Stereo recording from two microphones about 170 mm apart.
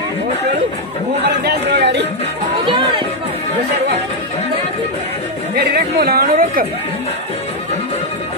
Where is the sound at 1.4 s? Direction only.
75° right (ahead or behind).